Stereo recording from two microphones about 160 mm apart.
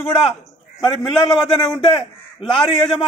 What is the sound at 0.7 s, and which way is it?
Speech, 30° left (ahead or behind).